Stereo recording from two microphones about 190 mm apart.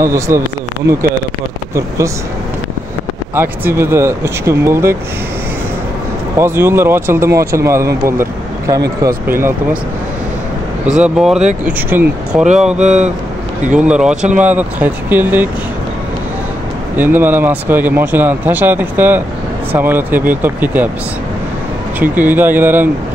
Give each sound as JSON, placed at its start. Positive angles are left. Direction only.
{"t": 0.0, "sound": "speech", "side_deg": -15}
{"t": 3.3, "sound": "speech", "side_deg": -10}
{"t": 6.3, "sound": "speech", "side_deg": -15}
{"t": 11.0, "sound": "speech", "side_deg": -5}
{"t": 12.8, "sound": "speech", "side_deg": -35}
{"t": 13.7, "sound": "speech", "side_deg": -5}
{"t": 16.9, "sound": "speech", "side_deg": -10}
{"t": 22.0, "sound": "speech", "side_deg": -10}